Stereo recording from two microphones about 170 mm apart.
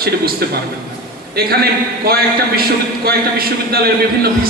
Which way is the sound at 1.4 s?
65° right (ahead or behind).